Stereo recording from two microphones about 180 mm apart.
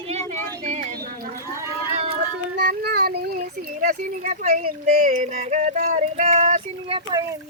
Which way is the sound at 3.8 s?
50° right (ahead or behind).